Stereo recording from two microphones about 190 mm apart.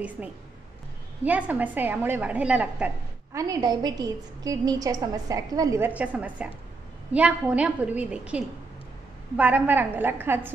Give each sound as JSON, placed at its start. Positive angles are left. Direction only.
{"t": 0.2, "sound": "a woman's voice", "side_deg": -5}
{"t": 3.3, "sound": "a woman's voice", "side_deg": -20}